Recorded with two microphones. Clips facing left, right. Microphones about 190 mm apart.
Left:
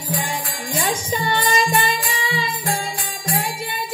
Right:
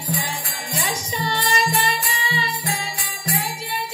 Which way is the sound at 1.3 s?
50° left (ahead or behind).